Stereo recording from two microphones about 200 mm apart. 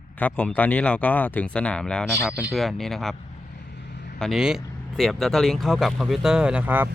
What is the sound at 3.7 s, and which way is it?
Vehicle, 55° left (ahead or behind).